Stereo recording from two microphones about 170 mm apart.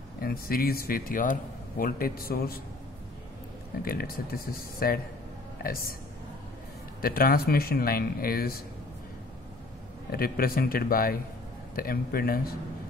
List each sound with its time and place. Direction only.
0.2 s speech: 60° left (ahead or behind)
3.8 s speech: 65° left (ahead or behind)
7.0 s speech: 60° left (ahead or behind)
10.1 s speech: 60° left (ahead or behind)